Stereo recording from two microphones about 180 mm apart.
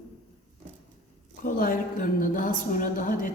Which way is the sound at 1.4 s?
50° left (ahead or behind).